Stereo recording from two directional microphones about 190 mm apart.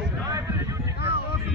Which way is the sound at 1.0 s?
55° left (ahead or behind).